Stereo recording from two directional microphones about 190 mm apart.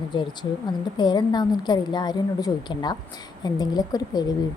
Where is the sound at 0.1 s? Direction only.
25° left (ahead or behind).